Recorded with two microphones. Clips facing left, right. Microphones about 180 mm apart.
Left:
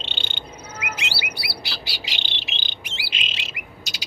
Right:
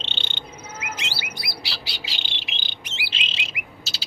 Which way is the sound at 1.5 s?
Centre (ahead or behind).